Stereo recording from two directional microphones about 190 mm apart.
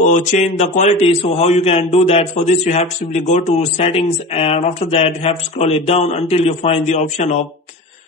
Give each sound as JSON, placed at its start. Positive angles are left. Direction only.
{"t": 0.0, "sound": "a man's voice", "side_deg": 40}